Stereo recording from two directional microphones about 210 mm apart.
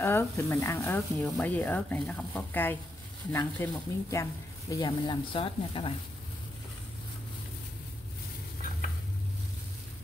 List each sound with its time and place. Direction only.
0.0 s speech: 10° left (ahead or behind)